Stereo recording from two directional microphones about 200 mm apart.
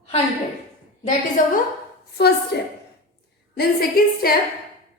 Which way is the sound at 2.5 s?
55° left (ahead or behind).